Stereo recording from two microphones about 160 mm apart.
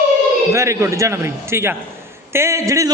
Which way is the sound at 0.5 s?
20° right (ahead or behind).